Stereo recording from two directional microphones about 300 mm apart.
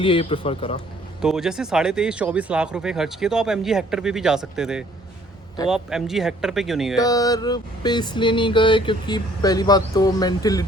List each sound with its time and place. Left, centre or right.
0.0 s a man's voice: centre
1.2 s speech: centre
7.0 s a sound: centre